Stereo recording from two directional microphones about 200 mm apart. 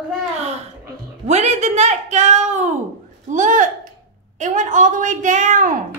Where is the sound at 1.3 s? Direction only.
35° right (ahead or behind).